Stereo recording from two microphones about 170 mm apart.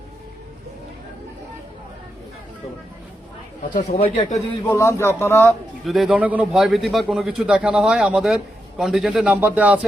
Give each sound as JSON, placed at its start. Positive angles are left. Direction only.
{"t": 3.6, "sound": "speech", "side_deg": 50}
{"t": 4.0, "sound": "speech", "side_deg": 40}
{"t": 4.6, "sound": "speech", "side_deg": 10}
{"t": 5.8, "sound": "a man's voice", "side_deg": 0}